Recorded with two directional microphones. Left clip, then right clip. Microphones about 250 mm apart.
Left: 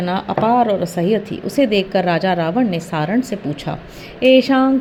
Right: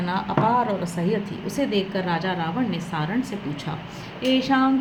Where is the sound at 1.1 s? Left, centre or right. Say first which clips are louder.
Left 9 dB; left.